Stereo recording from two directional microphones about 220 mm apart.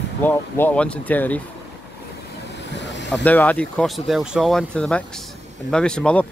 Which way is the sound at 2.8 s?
55° left (ahead or behind).